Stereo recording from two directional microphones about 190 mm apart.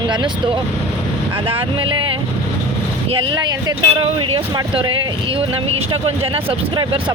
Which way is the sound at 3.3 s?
20° right (ahead or behind).